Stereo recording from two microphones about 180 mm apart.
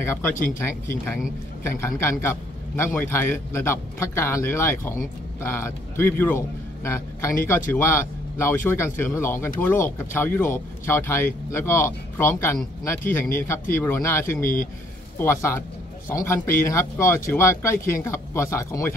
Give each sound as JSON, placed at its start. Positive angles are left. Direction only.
{"t": 0.0, "sound": "a man's voice", "side_deg": 15}